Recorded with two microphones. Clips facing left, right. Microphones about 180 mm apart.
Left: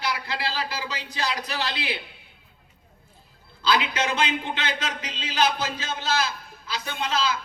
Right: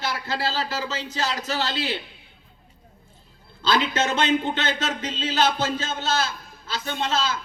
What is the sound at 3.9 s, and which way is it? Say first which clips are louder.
Speech: right 4 dB; 45° right (ahead or behind).